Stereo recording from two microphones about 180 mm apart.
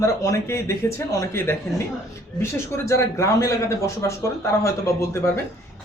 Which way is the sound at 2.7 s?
15° left (ahead or behind).